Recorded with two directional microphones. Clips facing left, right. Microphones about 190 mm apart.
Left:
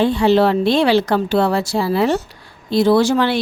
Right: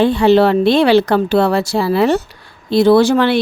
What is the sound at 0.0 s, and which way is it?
Speech, 65° right (ahead or behind).